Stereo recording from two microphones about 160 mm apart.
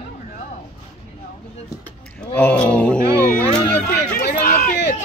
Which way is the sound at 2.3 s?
10° left (ahead or behind).